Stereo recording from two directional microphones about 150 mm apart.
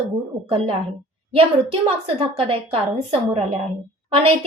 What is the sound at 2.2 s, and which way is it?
Speech, 40° right (ahead or behind).